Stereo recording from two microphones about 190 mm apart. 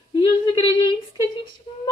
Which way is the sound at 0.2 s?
25° left (ahead or behind).